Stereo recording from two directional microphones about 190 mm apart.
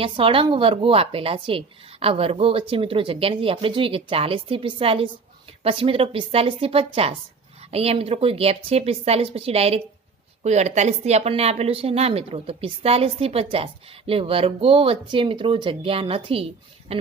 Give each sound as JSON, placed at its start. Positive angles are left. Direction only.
{"t": 0.0, "sound": "a woman's voice", "side_deg": -30}